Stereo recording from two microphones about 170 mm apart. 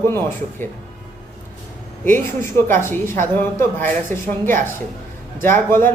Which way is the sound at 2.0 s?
15° left (ahead or behind).